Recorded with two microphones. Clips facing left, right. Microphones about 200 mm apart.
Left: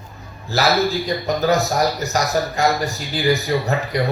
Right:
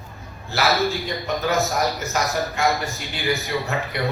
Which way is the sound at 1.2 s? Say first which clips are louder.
Left 4 dB; 35° left (ahead or behind).